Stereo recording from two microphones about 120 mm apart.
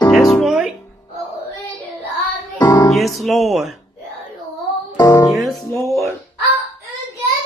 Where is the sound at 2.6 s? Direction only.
35° left (ahead or behind).